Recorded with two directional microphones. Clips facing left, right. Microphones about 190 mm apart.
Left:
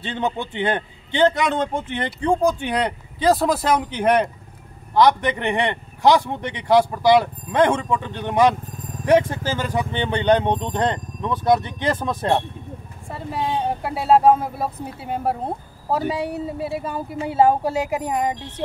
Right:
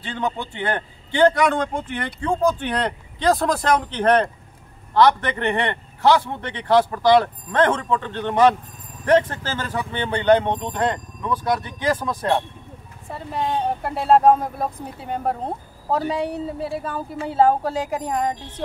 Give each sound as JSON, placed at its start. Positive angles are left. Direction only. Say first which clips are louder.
{"t": 0.0, "sound": "speech", "louder": "left 2 dB", "side_deg": 25}
{"t": 13.1, "sound": "speech", "louder": "even", "side_deg": 0}